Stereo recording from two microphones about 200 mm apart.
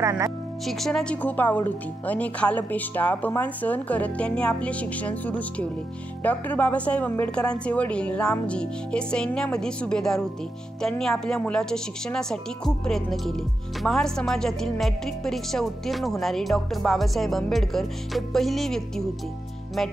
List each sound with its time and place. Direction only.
0.0 s speech: 15° right (ahead or behind)
0.7 s speech: centre (ahead or behind)